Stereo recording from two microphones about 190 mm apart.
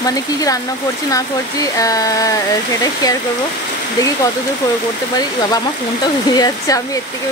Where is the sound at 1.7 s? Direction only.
20° left (ahead or behind).